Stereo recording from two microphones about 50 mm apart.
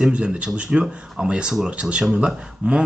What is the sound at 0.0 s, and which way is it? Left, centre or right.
Speech, right.